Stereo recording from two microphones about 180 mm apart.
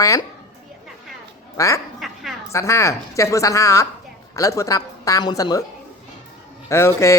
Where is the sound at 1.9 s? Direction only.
Centre (ahead or behind).